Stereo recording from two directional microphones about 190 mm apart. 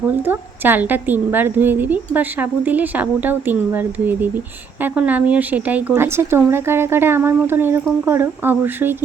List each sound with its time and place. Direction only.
0.3 s a woman's voice: 10° right (ahead or behind)